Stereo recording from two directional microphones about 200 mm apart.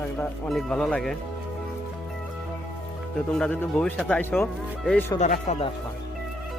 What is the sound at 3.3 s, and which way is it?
Speech, 5° left (ahead or behind).